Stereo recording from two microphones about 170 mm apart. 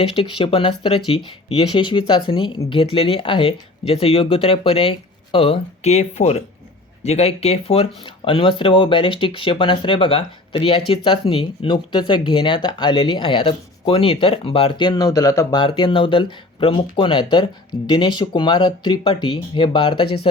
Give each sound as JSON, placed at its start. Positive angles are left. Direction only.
{"t": 0.0, "sound": "speech", "side_deg": 35}
{"t": 15.6, "sound": "speech", "side_deg": 30}